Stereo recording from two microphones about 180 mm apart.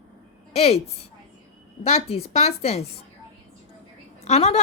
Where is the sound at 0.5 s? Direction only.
35° left (ahead or behind).